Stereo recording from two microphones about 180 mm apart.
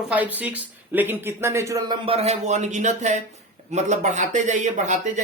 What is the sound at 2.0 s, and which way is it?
Speech, 35° right (ahead or behind).